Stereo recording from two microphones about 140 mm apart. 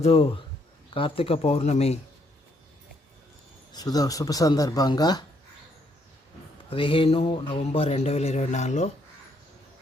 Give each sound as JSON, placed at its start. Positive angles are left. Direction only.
{"t": 0.0, "sound": "speech", "side_deg": 45}
{"t": 3.7, "sound": "speech", "side_deg": 30}
{"t": 6.7, "sound": "speech", "side_deg": 40}